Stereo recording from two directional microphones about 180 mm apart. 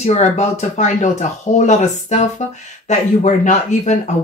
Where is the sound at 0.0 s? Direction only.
40° left (ahead or behind).